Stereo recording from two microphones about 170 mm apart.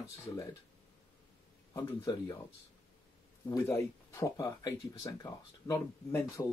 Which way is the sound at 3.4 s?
20° left (ahead or behind).